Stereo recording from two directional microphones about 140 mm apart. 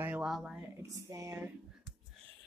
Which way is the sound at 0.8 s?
25° right (ahead or behind).